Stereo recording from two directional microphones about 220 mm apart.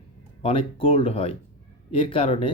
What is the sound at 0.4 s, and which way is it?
Speech, 25° left (ahead or behind).